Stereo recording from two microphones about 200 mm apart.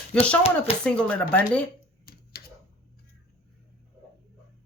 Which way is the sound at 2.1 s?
50° left (ahead or behind).